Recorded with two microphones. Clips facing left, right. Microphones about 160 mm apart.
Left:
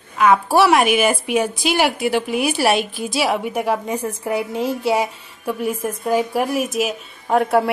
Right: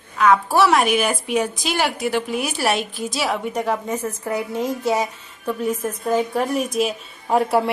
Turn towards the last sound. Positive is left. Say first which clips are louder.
# left 2 dB
turn(degrees=0)  # may be behind; listen again after turning